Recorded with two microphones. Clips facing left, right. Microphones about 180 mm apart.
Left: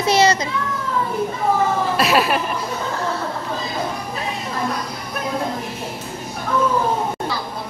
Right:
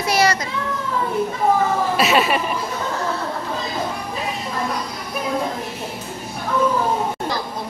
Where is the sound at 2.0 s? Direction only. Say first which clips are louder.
Even; centre (ahead or behind).